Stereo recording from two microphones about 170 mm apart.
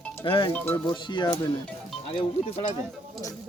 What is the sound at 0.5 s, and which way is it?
Speech, 10° left (ahead or behind).